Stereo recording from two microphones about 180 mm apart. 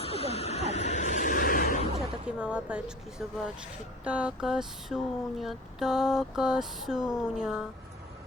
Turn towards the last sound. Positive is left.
turn(degrees=-5)  # may be behind; listen again after turning